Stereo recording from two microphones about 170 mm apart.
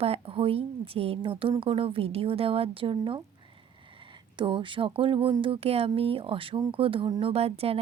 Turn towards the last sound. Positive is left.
turn(degrees=-35)  # may be behind; listen again after turning